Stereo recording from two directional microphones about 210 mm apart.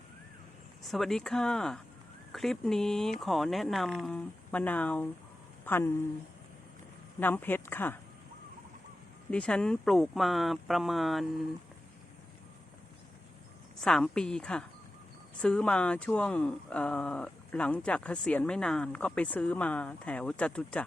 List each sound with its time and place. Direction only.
0.9 s speech: centre (ahead or behind)
7.2 s speech: 10° left (ahead or behind)
9.3 s speech: 5° left (ahead or behind)
13.8 s speech: centre (ahead or behind)